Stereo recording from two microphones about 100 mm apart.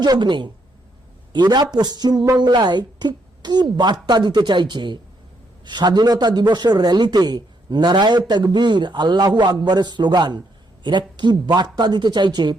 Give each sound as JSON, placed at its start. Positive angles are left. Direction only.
{"t": 0.0, "sound": "a man's voice", "side_deg": -50}